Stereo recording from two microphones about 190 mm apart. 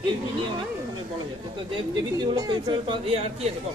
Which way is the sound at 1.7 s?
20° right (ahead or behind).